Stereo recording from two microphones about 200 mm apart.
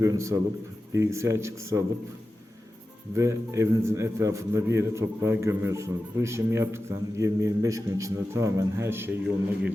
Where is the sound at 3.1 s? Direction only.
15° right (ahead or behind).